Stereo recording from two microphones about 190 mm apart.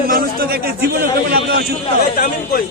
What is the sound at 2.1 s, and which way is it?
Speech, 50° left (ahead or behind).